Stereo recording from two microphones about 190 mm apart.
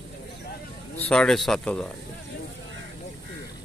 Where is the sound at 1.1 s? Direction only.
5° left (ahead or behind).